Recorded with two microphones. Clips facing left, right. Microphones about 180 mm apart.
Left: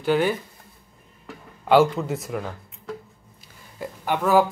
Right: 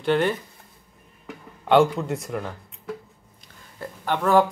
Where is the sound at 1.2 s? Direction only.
Centre (ahead or behind).